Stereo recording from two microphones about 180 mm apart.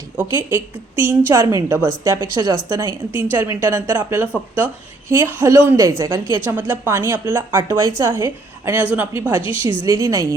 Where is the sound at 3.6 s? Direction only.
10° right (ahead or behind).